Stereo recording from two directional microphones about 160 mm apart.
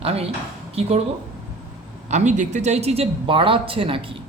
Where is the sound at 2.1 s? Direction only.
50° right (ahead or behind).